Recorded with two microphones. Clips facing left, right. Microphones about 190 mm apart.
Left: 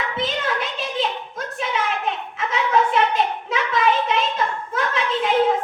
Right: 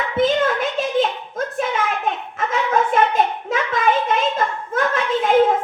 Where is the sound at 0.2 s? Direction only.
50° right (ahead or behind).